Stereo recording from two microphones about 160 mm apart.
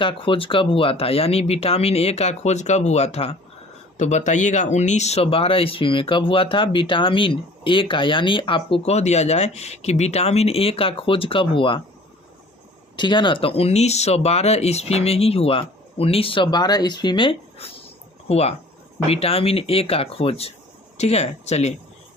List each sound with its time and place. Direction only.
0.0 s speech: 35° left (ahead or behind)
13.0 s speech: 30° left (ahead or behind)